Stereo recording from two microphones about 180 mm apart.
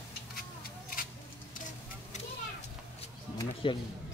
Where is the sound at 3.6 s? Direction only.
30° left (ahead or behind).